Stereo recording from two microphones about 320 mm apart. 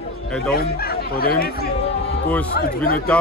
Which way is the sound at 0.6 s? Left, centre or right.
Left.